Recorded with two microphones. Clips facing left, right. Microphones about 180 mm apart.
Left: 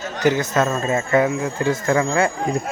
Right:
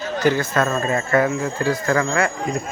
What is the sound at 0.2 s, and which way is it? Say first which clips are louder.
A man's voice: left 1 dB; 20° left (ahead or behind).